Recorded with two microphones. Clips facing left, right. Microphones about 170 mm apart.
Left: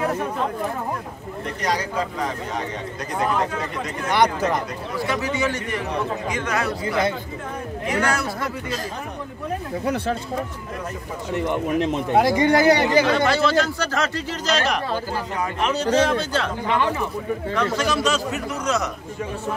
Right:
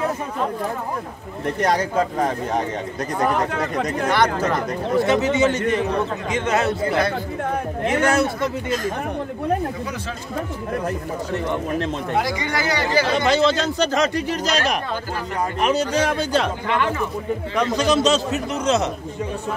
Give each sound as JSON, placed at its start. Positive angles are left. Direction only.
{"t": 1.6, "sound": "speech", "side_deg": -55}
{"t": 4.1, "sound": "speech", "side_deg": 15}
{"t": 4.9, "sound": "a man's voice", "side_deg": -20}
{"t": 7.8, "sound": "a man's voice", "side_deg": -25}
{"t": 11.3, "sound": "speech", "side_deg": 15}
{"t": 12.2, "sound": "speech", "side_deg": 50}
{"t": 13.1, "sound": "a man's voice", "side_deg": -20}
{"t": 17.6, "sound": "a man's voice", "side_deg": -15}